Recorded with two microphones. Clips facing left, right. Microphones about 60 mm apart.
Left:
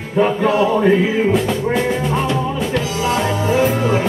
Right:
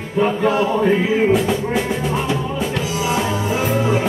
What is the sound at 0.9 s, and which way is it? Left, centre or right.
Music, centre.